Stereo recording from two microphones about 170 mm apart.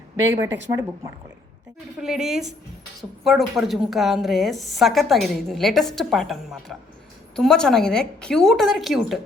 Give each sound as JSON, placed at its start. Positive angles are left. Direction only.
{"t": 0.3, "sound": "speech", "side_deg": -15}
{"t": 2.0, "sound": "a woman's voice", "side_deg": -5}